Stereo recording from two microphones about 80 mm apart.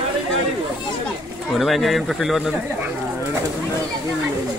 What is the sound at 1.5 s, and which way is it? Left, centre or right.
Speech, centre.